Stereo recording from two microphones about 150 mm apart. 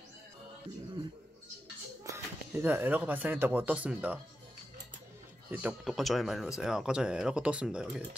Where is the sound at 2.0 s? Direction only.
20° right (ahead or behind).